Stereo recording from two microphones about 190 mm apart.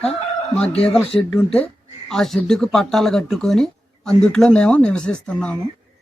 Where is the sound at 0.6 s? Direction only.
30° left (ahead or behind).